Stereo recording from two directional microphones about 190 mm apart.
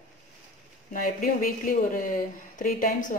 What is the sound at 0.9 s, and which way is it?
Speech, 45° left (ahead or behind).